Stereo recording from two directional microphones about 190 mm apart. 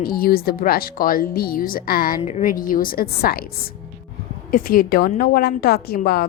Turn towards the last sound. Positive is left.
turn(degrees=55)  # may be behind; listen again after turning